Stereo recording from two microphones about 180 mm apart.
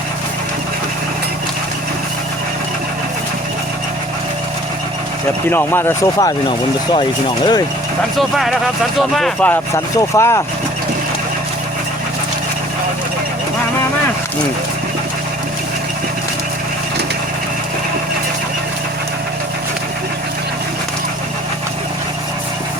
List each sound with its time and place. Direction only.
5.5 s speech: 10° left (ahead or behind)
8.2 s speech: centre (ahead or behind); by 10.4 s 15° left (ahead or behind)